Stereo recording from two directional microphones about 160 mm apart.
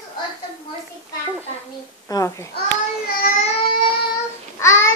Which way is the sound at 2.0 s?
20° left (ahead or behind).